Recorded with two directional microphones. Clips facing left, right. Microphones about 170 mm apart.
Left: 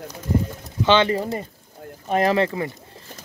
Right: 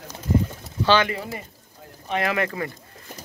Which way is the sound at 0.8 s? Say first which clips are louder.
Left 2 dB; 25° left (ahead or behind).